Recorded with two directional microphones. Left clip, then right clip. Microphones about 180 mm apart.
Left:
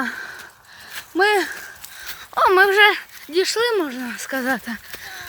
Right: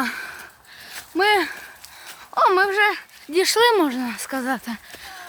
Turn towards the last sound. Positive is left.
turn(degrees=0)  # may be behind; listen again after turning